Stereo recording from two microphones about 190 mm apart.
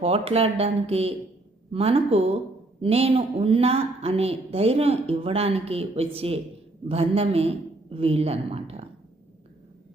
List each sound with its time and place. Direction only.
0.0 s a woman's voice: 30° right (ahead or behind)